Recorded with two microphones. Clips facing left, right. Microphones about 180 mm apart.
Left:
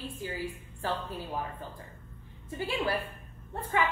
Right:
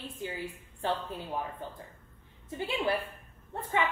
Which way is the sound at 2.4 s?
20° right (ahead or behind).